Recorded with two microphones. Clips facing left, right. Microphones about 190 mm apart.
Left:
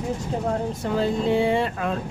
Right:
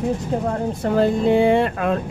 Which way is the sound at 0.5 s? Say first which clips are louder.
Right 5 dB; 55° right (ahead or behind).